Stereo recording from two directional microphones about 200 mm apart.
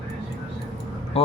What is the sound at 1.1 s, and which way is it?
Speech, 30° left (ahead or behind).